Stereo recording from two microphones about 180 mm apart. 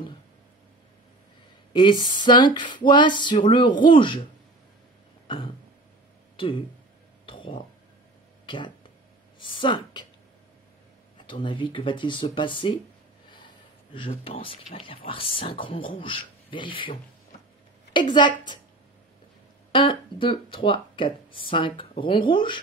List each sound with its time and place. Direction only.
1.7 s a sound: 25° left (ahead or behind)
2.1 s speech: 25° left (ahead or behind)
6.3 s speech: 30° left (ahead or behind)
7.2 s a sound: 30° left (ahead or behind)
8.5 s speech: 25° left (ahead or behind)
11.1 s speech: 25° left (ahead or behind)
13.9 s speech: 30° left (ahead or behind)
19.7 s speech: 30° left (ahead or behind)